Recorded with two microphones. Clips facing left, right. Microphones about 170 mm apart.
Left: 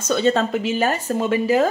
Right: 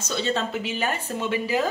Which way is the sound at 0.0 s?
50° left (ahead or behind).